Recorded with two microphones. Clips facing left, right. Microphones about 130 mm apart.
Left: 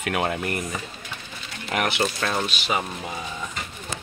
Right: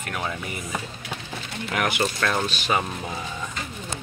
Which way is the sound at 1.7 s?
25° left (ahead or behind).